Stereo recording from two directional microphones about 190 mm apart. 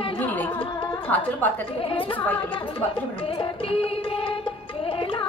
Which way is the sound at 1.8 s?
30° left (ahead or behind).